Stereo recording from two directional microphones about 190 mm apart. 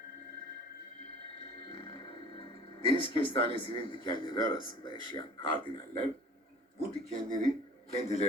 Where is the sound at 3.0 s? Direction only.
30° left (ahead or behind).